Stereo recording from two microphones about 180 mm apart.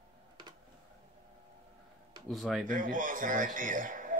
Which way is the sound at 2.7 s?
50° right (ahead or behind).